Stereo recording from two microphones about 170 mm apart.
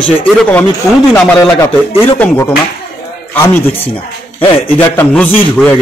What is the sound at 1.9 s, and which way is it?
A man's voice, 10° left (ahead or behind).